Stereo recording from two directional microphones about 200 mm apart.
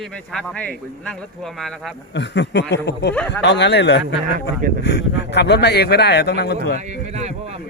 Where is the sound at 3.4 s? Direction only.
60° left (ahead or behind).